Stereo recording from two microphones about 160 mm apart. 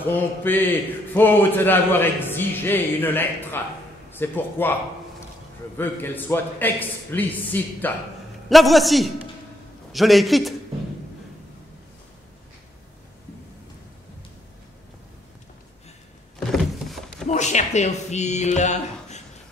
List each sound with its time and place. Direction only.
0.0 s a man's voice: 10° left (ahead or behind)
5.8 s a man's voice: 10° left (ahead or behind)
8.5 s a man's voice: centre (ahead or behind)
16.5 s a sound: centre (ahead or behind)
17.3 s speech: 45° left (ahead or behind)